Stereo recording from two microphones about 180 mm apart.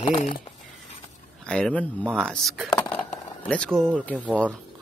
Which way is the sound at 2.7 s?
20° left (ahead or behind).